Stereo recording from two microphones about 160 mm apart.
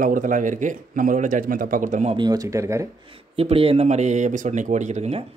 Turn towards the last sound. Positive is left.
turn(degrees=-45)  # may be behind; listen again after turning